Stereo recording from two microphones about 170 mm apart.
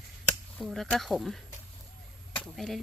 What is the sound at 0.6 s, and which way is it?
Speech, centre (ahead or behind).